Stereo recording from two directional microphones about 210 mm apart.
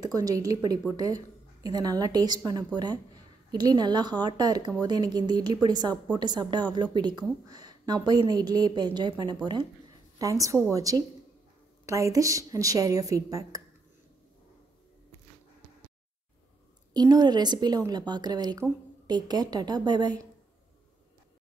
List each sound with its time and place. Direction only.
0.0 s a woman's voice: 15° right (ahead or behind)
16.9 s a woman's voice: 20° right (ahead or behind)